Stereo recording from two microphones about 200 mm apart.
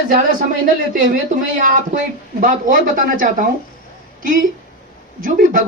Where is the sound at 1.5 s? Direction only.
45° right (ahead or behind).